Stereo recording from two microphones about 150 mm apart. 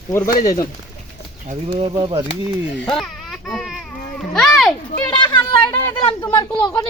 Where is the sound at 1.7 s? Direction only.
35° right (ahead or behind).